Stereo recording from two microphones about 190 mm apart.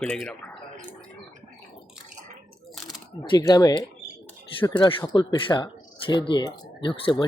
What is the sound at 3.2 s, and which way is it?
Speech, 20° left (ahead or behind).